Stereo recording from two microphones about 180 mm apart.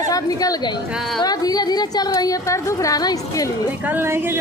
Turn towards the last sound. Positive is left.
turn(degrees=-15)  # may be behind; listen again after turning